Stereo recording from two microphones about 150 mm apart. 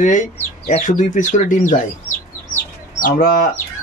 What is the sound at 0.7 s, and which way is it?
Speech, 55° left (ahead or behind).